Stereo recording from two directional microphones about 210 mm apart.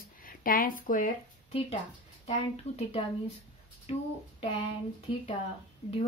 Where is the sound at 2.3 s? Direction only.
30° left (ahead or behind).